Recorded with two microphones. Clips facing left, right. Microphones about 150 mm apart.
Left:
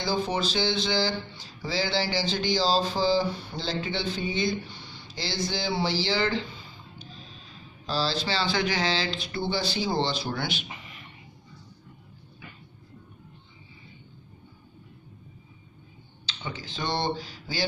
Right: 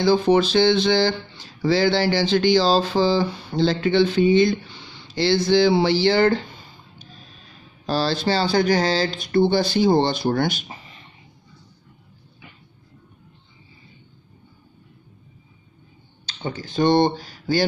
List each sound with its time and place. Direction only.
0.0 s speech: 65° right (ahead or behind); by 6.4 s 50° right (ahead or behind)
7.8 s speech: 55° right (ahead or behind)
16.3 s speech: 45° right (ahead or behind)